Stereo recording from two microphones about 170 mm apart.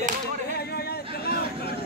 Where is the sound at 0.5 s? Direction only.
70° left (ahead or behind).